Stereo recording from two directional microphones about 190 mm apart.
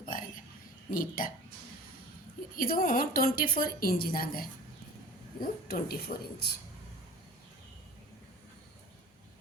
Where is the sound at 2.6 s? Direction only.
50° left (ahead or behind).